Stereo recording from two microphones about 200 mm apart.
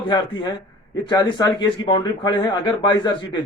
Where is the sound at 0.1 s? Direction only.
20° left (ahead or behind).